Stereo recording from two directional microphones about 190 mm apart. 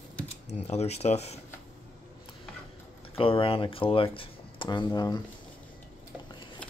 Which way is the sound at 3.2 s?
30° left (ahead or behind).